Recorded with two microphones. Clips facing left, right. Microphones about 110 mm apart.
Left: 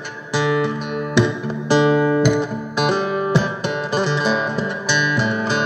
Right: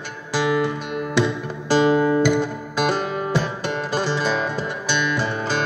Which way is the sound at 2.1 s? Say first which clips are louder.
Left 1 dB; 20° left (ahead or behind).